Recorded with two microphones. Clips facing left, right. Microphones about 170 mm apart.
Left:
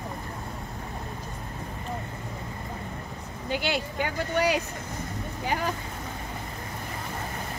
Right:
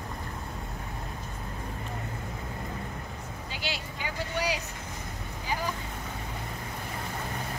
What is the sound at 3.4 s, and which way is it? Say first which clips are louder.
Speech: left 10 dB; 55° left (ahead or behind).